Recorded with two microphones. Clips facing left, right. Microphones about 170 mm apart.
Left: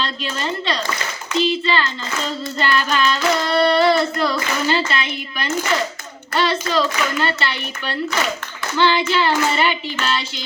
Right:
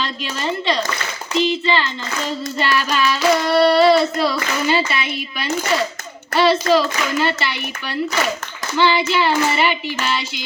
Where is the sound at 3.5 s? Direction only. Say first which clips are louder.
Right 2 dB; 5° right (ahead or behind).